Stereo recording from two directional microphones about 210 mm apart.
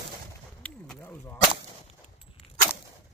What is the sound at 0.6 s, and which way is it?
Whip, 5° left (ahead or behind).